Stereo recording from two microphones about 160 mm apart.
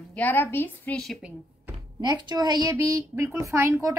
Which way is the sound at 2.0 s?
25° right (ahead or behind).